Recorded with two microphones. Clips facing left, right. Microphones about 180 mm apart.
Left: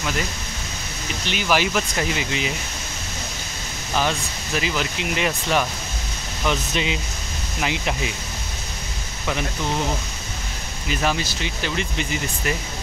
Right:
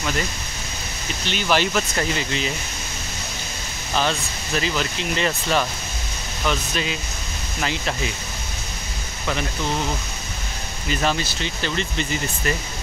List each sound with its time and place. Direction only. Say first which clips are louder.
1.2 s speech: even; 10° left (ahead or behind)
3.9 s speech: even; 10° left (ahead or behind)
10.9 s speech: right 1 dB; 10° left (ahead or behind)